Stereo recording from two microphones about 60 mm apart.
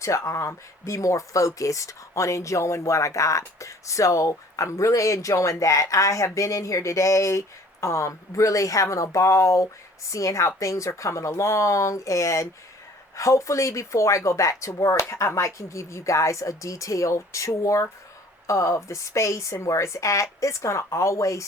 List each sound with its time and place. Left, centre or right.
0.0 s speech: left